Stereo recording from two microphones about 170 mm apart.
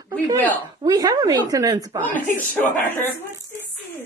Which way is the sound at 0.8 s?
20° right (ahead or behind).